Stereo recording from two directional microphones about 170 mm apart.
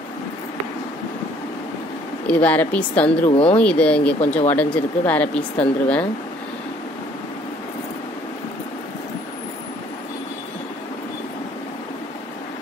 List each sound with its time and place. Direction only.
2.2 s speech: 10° left (ahead or behind)
3.3 s speech: 35° left (ahead or behind)
3.5 s speech: 10° left (ahead or behind)